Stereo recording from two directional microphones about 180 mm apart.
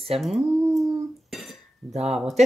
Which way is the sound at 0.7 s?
Centre (ahead or behind).